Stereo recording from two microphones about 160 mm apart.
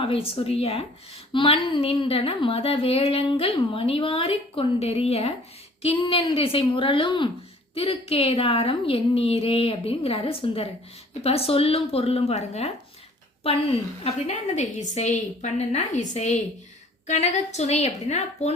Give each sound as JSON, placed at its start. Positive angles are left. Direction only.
{"t": 0.0, "sound": "a woman's voice", "side_deg": 35}